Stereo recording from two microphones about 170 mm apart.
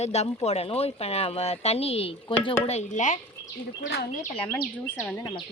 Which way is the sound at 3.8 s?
65° left (ahead or behind).